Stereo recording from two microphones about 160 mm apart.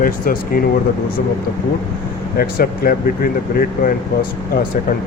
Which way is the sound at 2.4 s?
65° left (ahead or behind).